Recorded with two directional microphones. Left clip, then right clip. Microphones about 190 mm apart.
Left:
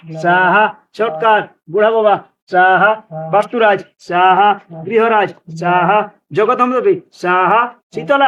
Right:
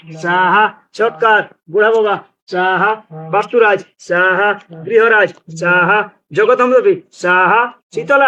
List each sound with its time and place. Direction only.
0.2 s speech: 35° left (ahead or behind)